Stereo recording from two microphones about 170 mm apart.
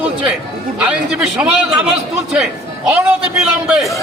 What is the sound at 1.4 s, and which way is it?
A man's voice, 5° right (ahead or behind).